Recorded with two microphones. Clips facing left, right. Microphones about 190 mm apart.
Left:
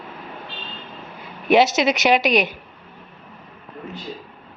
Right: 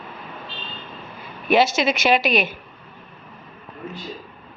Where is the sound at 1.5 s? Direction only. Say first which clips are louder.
Left 2 dB; 20° left (ahead or behind).